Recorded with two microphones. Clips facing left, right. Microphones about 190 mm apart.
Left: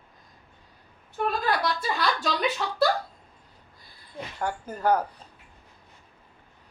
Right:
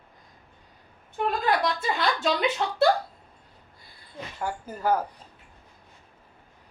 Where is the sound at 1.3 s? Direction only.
20° right (ahead or behind).